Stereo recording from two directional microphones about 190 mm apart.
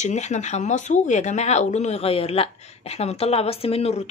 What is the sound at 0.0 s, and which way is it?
Speech, 40° left (ahead or behind).